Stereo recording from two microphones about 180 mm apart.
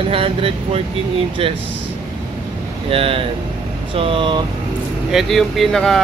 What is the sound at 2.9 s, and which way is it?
Speech, 30° right (ahead or behind).